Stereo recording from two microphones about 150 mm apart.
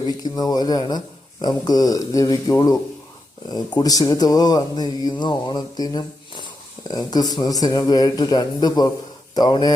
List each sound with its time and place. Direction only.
0.0 s speech: 25° left (ahead or behind)